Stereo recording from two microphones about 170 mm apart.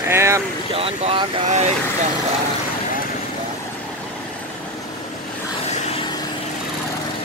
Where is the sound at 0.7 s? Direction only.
35° right (ahead or behind).